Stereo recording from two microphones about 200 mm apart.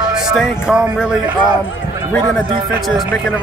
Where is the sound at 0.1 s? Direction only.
5° right (ahead or behind).